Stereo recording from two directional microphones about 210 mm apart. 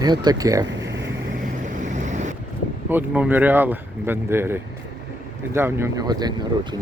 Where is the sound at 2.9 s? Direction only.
10° right (ahead or behind).